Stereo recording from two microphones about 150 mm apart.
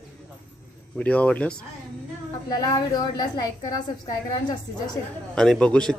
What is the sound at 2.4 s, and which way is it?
A woman's voice, 25° left (ahead or behind).